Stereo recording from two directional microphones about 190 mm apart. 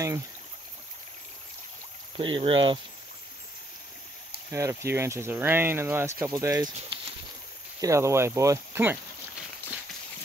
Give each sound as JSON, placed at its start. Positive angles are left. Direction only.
{"t": 2.1, "sound": "speech", "side_deg": -25}
{"t": 4.5, "sound": "speech", "side_deg": -15}